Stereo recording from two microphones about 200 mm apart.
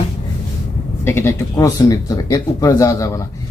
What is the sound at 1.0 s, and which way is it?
Speech, 10° left (ahead or behind).